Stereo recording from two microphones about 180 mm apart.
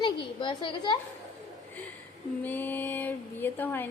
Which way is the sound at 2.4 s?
10° left (ahead or behind).